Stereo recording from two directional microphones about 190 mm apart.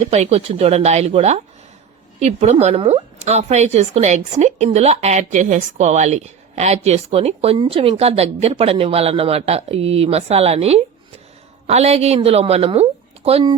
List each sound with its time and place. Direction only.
0.1 s a woman's voice: 35° right (ahead or behind)